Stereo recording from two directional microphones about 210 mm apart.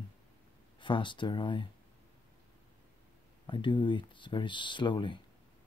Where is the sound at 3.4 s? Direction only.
20° left (ahead or behind).